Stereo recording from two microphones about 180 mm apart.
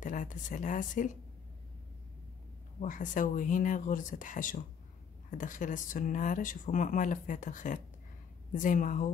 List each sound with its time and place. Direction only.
0.0 s speech: 45° left (ahead or behind)
2.8 s speech: 45° left (ahead or behind)